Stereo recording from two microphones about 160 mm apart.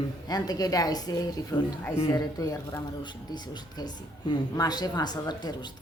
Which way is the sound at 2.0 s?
25° left (ahead or behind).